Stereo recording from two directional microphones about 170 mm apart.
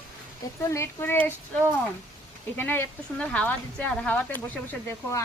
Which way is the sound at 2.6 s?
10° left (ahead or behind).